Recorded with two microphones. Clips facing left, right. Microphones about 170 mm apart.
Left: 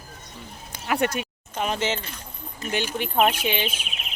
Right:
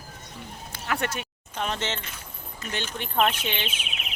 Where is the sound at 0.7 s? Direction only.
15° left (ahead or behind).